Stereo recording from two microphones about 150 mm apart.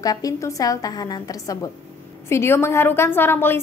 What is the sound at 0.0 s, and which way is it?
A woman's voice, 25° left (ahead or behind).